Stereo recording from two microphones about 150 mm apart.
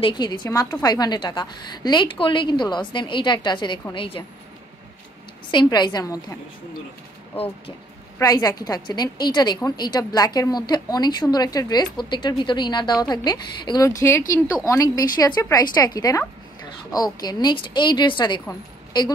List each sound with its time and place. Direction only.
0.0 s a woman's voice: 30° left (ahead or behind)
5.5 s a woman's voice: 30° left (ahead or behind)
8.2 s a woman's voice: 25° left (ahead or behind)